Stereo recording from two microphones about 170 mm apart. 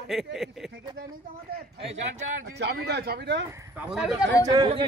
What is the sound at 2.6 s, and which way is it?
Speech, 75° right (ahead or behind).